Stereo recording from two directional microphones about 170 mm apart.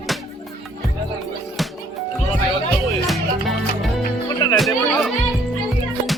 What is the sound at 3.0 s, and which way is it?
Music, centre (ahead or behind).